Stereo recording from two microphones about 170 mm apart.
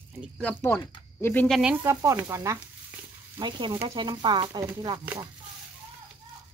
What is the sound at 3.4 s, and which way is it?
Speech, 25° right (ahead or behind).